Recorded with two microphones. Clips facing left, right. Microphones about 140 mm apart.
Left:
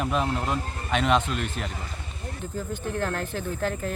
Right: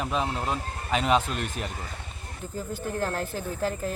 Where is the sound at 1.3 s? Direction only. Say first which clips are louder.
Left 2 dB; 45° right (ahead or behind).